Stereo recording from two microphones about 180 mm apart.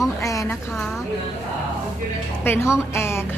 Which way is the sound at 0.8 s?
Centre (ahead or behind).